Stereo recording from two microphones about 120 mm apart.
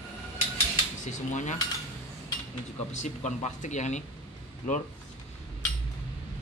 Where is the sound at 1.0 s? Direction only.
75° left (ahead or behind).